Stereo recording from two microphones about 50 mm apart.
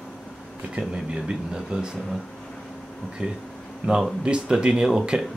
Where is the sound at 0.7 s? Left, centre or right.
Right.